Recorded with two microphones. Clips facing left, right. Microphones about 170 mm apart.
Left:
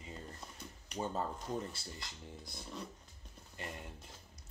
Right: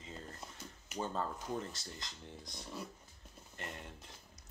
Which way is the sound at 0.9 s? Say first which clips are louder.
Left 1 dB; 25° left (ahead or behind).